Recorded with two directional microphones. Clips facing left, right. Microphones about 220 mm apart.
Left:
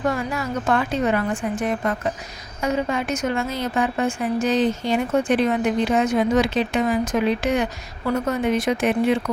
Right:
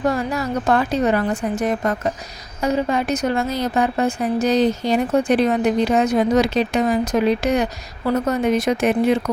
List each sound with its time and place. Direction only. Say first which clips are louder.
0.1 s a woman's voice: right 3 dB; 35° right (ahead or behind)